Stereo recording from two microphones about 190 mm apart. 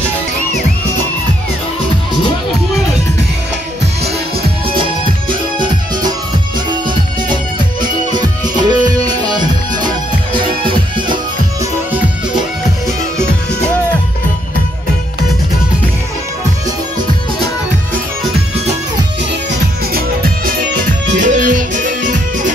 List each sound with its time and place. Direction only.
7.8 s music: 20° right (ahead or behind)
19.9 s music: 50° right (ahead or behind)